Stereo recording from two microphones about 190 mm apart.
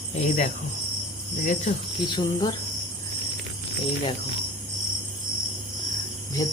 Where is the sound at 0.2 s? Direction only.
35° left (ahead or behind).